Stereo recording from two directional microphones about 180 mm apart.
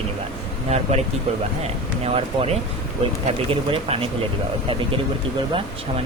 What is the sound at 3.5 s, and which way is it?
Speech, 30° right (ahead or behind).